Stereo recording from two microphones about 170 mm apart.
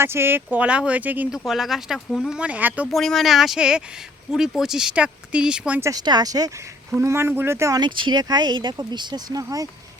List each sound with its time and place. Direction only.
0.0 s speech: 15° right (ahead or behind)
5.9 s speech: 25° right (ahead or behind)